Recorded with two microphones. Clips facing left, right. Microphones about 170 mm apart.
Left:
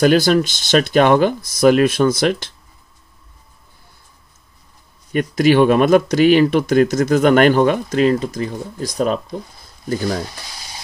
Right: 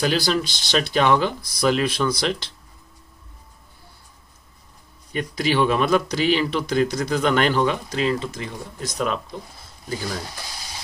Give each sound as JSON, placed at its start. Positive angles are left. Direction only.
{"t": 0.0, "sound": "speech", "side_deg": 50}
{"t": 5.1, "sound": "speech", "side_deg": 50}
{"t": 9.8, "sound": "speech", "side_deg": 50}